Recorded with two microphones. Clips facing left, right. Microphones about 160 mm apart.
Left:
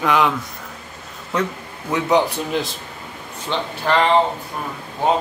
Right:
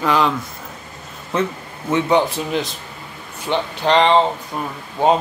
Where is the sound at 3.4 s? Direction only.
20° right (ahead or behind).